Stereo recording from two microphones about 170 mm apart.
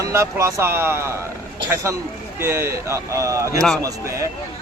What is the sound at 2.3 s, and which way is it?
Speech, 15° right (ahead or behind).